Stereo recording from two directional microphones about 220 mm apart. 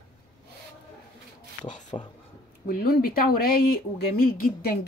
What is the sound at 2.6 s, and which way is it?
A woman's voice, 45° left (ahead or behind).